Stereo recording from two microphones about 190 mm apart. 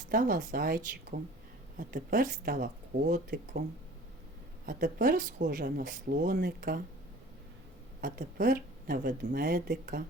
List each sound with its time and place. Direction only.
0.1 s speech: 45° right (ahead or behind)
4.6 s speech: 50° right (ahead or behind)
8.0 s speech: 45° right (ahead or behind)